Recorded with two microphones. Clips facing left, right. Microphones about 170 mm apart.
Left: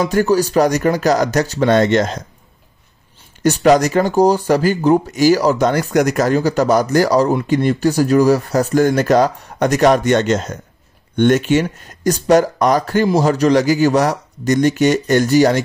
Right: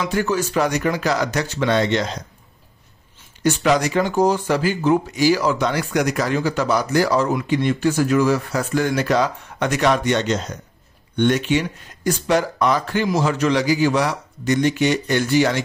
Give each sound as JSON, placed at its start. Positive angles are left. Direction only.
{"t": 0.0, "sound": "speech", "side_deg": 40}
{"t": 3.4, "sound": "speech", "side_deg": 40}